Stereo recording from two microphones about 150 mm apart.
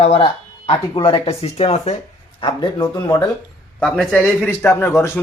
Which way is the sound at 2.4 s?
30° left (ahead or behind).